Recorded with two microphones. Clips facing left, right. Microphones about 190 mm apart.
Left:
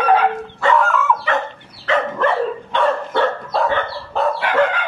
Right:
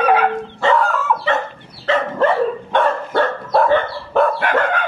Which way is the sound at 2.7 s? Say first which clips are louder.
Right 1 dB; 50° right (ahead or behind).